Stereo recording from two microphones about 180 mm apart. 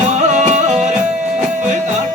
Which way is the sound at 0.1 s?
40° right (ahead or behind).